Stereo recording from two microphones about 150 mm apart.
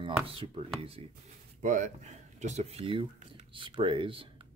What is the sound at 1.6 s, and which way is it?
Speech, 55° right (ahead or behind).